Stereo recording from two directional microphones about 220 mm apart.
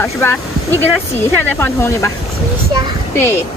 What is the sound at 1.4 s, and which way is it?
Speech, 10° left (ahead or behind).